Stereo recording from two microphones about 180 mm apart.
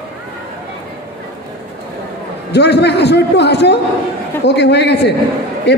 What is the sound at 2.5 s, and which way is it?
A man's voice, 65° left (ahead or behind).